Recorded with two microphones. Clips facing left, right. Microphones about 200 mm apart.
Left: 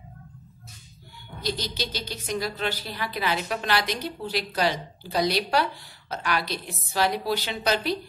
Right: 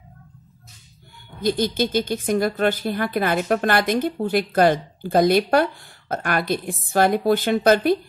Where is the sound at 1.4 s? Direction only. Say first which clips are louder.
Right 10 dB; 50° right (ahead or behind).